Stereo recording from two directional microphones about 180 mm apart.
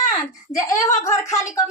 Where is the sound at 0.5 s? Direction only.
20° left (ahead or behind).